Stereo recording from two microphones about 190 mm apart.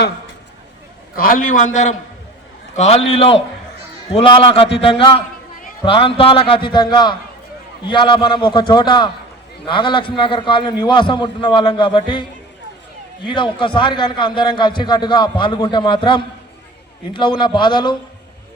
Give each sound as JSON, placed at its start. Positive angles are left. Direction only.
{"t": 1.1, "sound": "a man's voice", "side_deg": 50}
{"t": 13.2, "sound": "a man's voice", "side_deg": 25}